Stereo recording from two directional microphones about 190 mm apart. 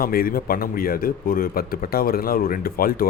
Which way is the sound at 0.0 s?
50° left (ahead or behind).